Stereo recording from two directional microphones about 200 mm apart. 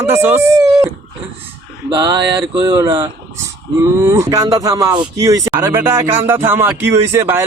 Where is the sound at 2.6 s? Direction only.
15° right (ahead or behind).